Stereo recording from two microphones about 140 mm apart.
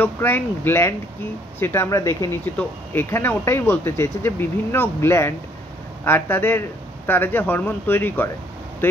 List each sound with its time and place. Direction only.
0.0 s speech: 15° left (ahead or behind)